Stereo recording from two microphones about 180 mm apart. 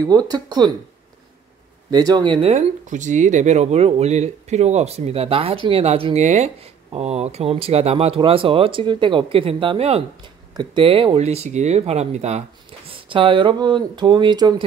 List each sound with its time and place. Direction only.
0.0 s speech: 20° right (ahead or behind)
1.9 s speech: 20° right (ahead or behind)
2.4 s speech: 40° right (ahead or behind); by 14.5 s 25° right (ahead or behind)